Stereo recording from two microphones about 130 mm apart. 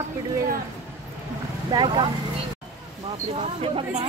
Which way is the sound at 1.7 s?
35° right (ahead or behind).